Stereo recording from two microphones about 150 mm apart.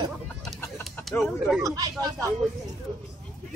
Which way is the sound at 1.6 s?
20° right (ahead or behind).